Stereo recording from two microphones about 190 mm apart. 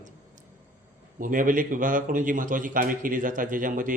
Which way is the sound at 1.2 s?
45° right (ahead or behind).